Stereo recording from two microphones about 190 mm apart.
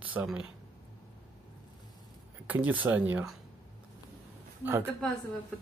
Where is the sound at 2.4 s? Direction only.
10° right (ahead or behind).